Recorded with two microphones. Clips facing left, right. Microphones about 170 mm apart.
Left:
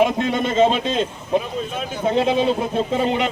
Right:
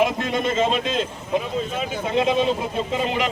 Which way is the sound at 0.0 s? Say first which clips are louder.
Left 3 dB; 30° left (ahead or behind).